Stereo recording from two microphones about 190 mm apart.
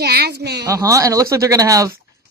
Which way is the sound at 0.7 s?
15° right (ahead or behind).